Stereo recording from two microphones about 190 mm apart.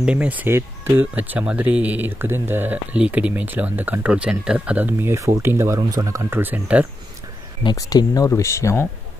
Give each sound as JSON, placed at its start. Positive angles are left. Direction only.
{"t": 0.0, "sound": "speech", "side_deg": -5}
{"t": 7.6, "sound": "speech", "side_deg": 20}